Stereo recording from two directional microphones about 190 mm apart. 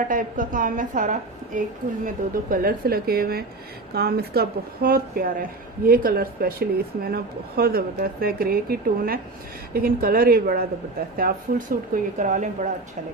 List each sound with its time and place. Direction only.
0.1 s a woman's voice: 45° right (ahead or behind)